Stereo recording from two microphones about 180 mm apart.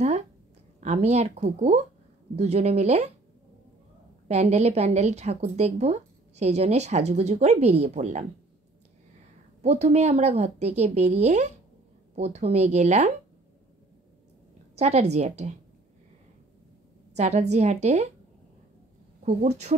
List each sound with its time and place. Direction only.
0.7 s a woman's voice: 35° right (ahead or behind)
4.3 s a woman's voice: 35° right (ahead or behind)
9.6 s a woman's voice: 35° right (ahead or behind)
14.8 s a woman's voice: 35° right (ahead or behind)
17.1 s a woman's voice: 40° right (ahead or behind)
19.2 s a woman's voice: 40° right (ahead or behind)